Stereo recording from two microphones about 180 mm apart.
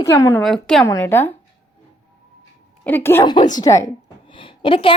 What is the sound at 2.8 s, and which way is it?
Speech, 10° left (ahead or behind).